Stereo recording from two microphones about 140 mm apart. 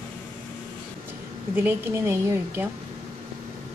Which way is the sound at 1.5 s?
20° right (ahead or behind).